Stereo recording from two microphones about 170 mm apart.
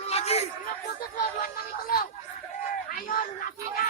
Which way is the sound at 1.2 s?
60° left (ahead or behind).